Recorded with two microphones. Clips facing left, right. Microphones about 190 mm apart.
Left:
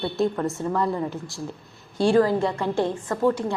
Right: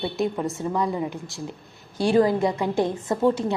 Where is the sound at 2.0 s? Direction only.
15° right (ahead or behind).